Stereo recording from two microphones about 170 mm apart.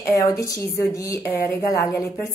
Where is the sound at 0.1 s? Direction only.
20° left (ahead or behind).